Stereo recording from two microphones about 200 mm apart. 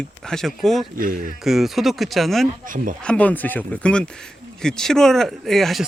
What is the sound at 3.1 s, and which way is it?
Speech, 5° left (ahead or behind).